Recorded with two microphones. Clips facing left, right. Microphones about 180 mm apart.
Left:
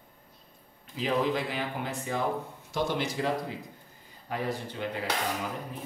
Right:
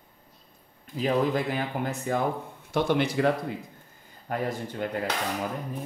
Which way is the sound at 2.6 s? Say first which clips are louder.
Right 6 dB; 60° right (ahead or behind).